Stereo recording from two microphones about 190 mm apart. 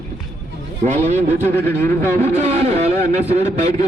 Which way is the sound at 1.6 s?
10° left (ahead or behind).